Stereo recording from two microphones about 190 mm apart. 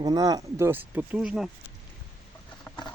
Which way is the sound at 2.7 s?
15° left (ahead or behind).